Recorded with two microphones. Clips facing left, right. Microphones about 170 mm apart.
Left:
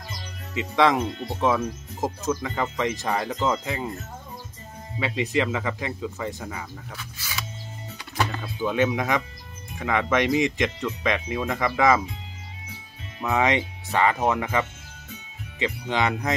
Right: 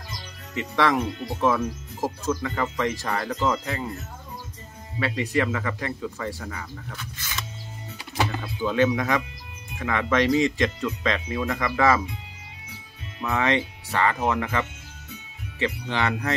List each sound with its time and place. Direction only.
0.6 s speech: 20° left (ahead or behind)
4.9 s speech: 20° left (ahead or behind)
8.5 s speech: 15° left (ahead or behind)
13.2 s speech: 15° left (ahead or behind)